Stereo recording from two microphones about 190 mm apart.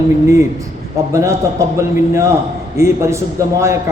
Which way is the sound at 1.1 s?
15° right (ahead or behind).